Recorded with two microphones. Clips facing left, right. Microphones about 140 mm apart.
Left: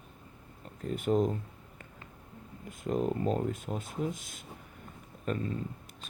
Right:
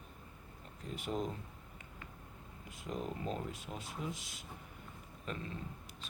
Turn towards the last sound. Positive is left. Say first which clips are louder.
# left 10 dB
turn(degrees=50)  # may be behind; listen again after turning